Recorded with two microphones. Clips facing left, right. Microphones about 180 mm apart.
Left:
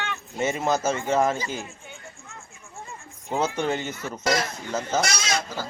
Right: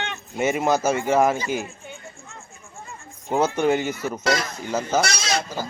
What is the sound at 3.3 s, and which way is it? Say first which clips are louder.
A man's voice: right 5 dB; 10° right (ahead or behind).